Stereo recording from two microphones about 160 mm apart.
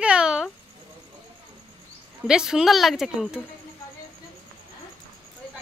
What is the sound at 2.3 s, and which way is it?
Speech, 5° right (ahead or behind).